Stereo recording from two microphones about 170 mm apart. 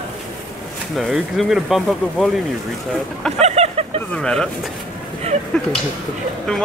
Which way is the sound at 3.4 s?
40° right (ahead or behind).